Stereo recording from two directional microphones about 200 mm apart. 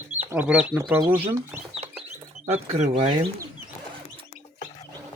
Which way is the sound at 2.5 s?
35° right (ahead or behind).